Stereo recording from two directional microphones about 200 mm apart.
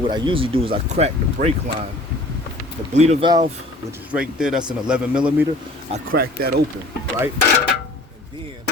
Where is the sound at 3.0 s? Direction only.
35° right (ahead or behind).